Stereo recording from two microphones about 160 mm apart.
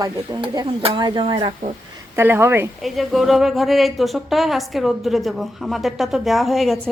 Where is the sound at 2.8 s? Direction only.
Centre (ahead or behind).